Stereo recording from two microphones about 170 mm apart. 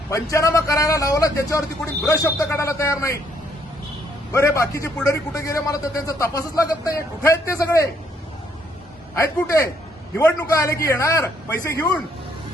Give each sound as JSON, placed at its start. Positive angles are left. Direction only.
{"t": 0.1, "sound": "a man's voice", "side_deg": 20}
{"t": 4.3, "sound": "a man's voice", "side_deg": 15}
{"t": 9.1, "sound": "a man's voice", "side_deg": 15}